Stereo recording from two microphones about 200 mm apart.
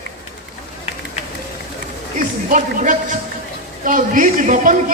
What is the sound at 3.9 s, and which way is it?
Speech, 40° right (ahead or behind).